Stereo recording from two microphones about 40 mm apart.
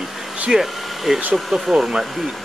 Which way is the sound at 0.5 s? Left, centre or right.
Centre.